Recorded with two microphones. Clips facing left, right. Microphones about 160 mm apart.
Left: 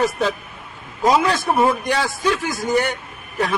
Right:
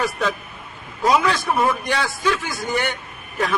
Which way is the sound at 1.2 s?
50° left (ahead or behind).